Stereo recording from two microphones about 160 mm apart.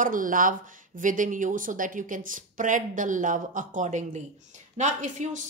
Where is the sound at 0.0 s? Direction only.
60° right (ahead or behind).